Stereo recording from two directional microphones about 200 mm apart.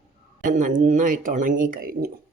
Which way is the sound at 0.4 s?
40° right (ahead or behind).